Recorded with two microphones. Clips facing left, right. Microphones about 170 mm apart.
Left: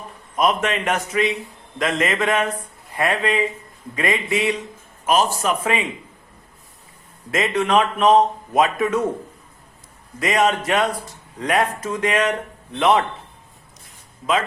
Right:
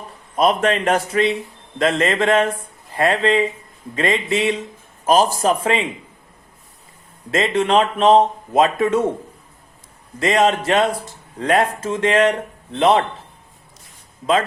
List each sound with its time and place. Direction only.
0.3 s speech: 35° right (ahead or behind)
7.3 s speech: 30° right (ahead or behind)
10.2 s speech: 30° right (ahead or behind)